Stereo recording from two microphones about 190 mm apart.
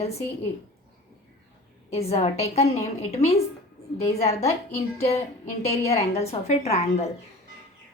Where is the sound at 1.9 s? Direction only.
35° left (ahead or behind).